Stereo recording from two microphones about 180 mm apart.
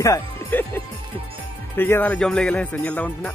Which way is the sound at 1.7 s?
10° left (ahead or behind).